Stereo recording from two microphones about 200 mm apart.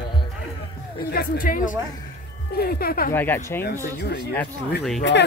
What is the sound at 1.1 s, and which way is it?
Speech, 45° left (ahead or behind).